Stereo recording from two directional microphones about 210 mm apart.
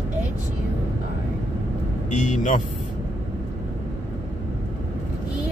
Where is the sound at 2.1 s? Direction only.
35° left (ahead or behind).